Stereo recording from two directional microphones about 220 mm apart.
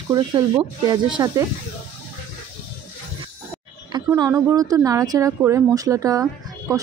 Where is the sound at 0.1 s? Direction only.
15° right (ahead or behind).